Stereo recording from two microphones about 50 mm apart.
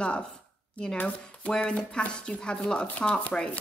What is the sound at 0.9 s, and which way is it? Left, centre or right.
Speech, left.